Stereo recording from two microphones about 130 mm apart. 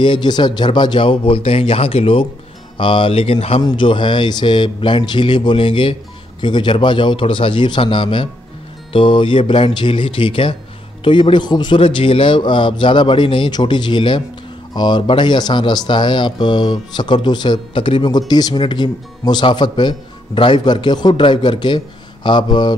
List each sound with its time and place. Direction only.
0.0 s speech: 35° left (ahead or behind)